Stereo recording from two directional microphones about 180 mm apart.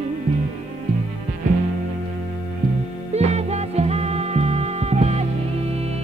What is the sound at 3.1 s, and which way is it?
Music, 35° right (ahead or behind).